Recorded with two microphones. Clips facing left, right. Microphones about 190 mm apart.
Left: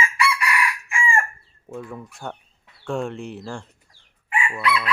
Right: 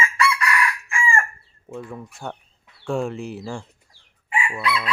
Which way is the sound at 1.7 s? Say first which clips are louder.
Even; centre (ahead or behind).